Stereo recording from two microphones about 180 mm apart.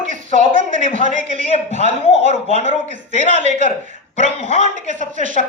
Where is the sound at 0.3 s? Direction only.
45° right (ahead or behind).